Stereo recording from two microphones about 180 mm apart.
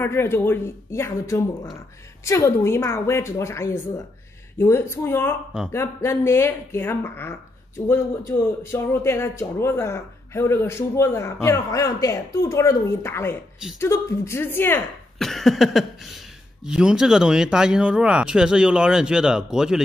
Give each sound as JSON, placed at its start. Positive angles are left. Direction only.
{"t": 0.0, "sound": "speech", "side_deg": 15}
{"t": 15.2, "sound": "speech", "side_deg": 0}